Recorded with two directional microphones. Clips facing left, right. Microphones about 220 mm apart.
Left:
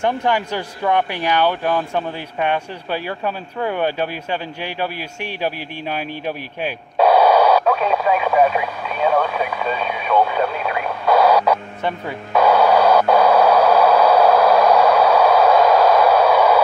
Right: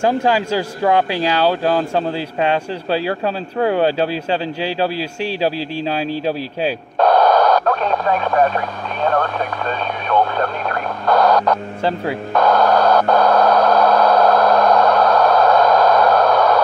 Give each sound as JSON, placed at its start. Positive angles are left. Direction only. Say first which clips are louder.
{"t": 1.5, "sound": "speech", "louder": "right 3 dB", "side_deg": -35}
{"t": 7.0, "sound": "radio", "louder": "even", "side_deg": 10}
{"t": 12.4, "sound": "a sound", "louder": "left 1 dB", "side_deg": 10}